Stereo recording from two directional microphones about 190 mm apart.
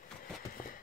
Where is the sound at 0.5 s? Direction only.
45° left (ahead or behind).